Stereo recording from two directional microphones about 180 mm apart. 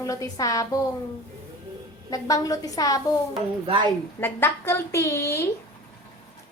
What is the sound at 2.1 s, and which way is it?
Speech, 20° left (ahead or behind).